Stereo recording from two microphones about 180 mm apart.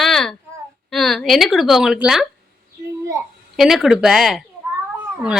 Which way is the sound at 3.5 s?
Centre (ahead or behind).